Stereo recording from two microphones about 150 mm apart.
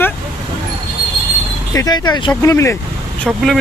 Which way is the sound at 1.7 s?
25° left (ahead or behind).